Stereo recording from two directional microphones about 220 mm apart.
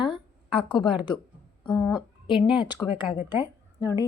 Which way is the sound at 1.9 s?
20° left (ahead or behind).